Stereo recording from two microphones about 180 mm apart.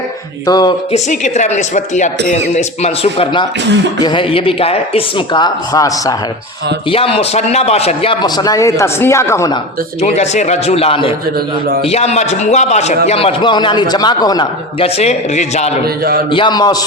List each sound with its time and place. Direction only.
0.4 s a man's voice: 20° left (ahead or behind)
0.9 s a man's voice: 40° left (ahead or behind); by 6.1 s 20° left (ahead or behind)
6.9 s a man's voice: 30° left (ahead or behind)
10.0 s a man's voice: 35° left (ahead or behind)
14.9 s speech: 40° left (ahead or behind)
16.3 s a man's voice: 25° left (ahead or behind)